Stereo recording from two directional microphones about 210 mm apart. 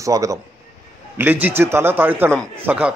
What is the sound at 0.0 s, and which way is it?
A man's voice, 15° right (ahead or behind).